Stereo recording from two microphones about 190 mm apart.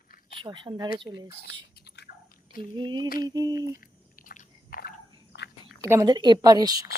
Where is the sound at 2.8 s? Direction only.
25° right (ahead or behind).